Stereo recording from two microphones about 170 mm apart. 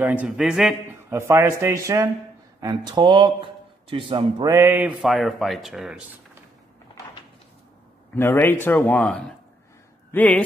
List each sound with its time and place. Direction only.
0.0 s a man's voice: 10° right (ahead or behind)
1.1 s speech: 15° right (ahead or behind)
8.1 s a man's voice: 10° left (ahead or behind)